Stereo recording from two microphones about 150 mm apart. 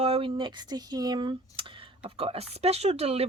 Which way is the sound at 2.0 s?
40° right (ahead or behind).